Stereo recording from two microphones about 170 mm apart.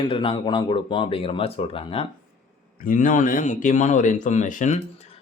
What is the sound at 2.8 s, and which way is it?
Speech, 50° left (ahead or behind).